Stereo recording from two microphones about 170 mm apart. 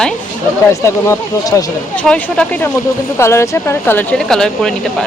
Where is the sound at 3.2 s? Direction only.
15° left (ahead or behind).